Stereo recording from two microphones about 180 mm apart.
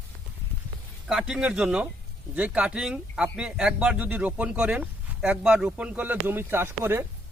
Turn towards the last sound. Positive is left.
turn(degrees=-10)  # may be behind; listen again after turning